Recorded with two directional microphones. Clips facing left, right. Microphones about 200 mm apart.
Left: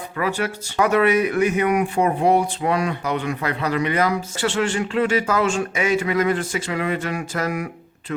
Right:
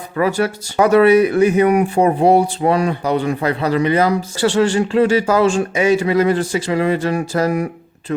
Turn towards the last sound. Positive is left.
turn(degrees=-35)  # may be behind; listen again after turning